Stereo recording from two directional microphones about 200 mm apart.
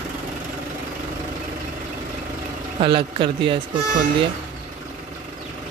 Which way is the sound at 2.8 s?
25° right (ahead or behind).